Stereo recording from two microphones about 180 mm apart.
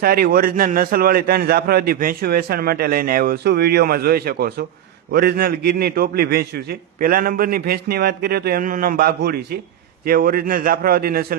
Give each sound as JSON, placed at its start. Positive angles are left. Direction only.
{"t": 0.0, "sound": "a man's voice", "side_deg": -60}